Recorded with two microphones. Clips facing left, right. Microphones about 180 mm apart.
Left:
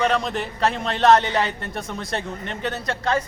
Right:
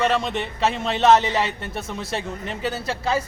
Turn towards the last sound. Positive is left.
turn(degrees=-5)  # may be behind; listen again after turning